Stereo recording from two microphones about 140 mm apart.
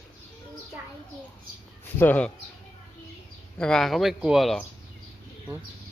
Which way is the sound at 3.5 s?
5° left (ahead or behind).